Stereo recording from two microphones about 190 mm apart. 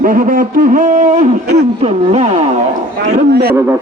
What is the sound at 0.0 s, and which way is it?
A man's voice, 45° right (ahead or behind).